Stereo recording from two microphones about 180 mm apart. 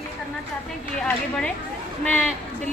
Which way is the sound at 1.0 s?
5° left (ahead or behind).